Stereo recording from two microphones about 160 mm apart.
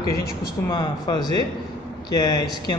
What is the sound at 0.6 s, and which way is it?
A man's voice, 20° left (ahead or behind).